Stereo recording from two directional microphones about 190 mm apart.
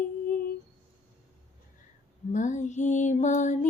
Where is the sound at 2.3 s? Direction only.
40° left (ahead or behind).